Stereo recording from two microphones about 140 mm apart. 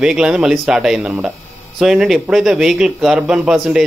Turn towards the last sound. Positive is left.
turn(degrees=-5)  # may be behind; listen again after turning